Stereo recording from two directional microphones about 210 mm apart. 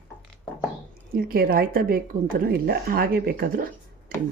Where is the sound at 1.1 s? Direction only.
45° right (ahead or behind).